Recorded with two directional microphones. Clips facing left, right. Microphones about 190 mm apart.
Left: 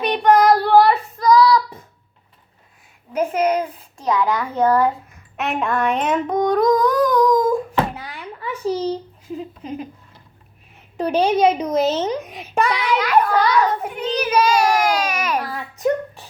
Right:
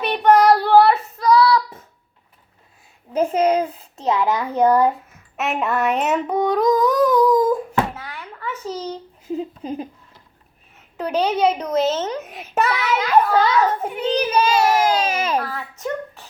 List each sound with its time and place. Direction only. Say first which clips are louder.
0.0 s child singing: even; 5° right (ahead or behind)
3.1 s a child's voice: right 1 dB; 30° right (ahead or behind)
5.4 s speech: even; 5° right (ahead or behind)
6.2 s humming: left 2 dB; 10° right (ahead or behind)
7.9 s a sound: left 2 dB; 15° left (ahead or behind)
9.2 s a sound: right 4 dB; 30° right (ahead or behind)
10.9 s a woman's voice: left 3 dB; 10° left (ahead or behind)
12.2 s a child's voice: left 1 dB; 5° right (ahead or behind)
13.3 s children playing: even; 25° right (ahead or behind)
14.2 s child singing: left 2 dB; 30° right (ahead or behind)
15.4 s a sound: even; 10° left (ahead or behind)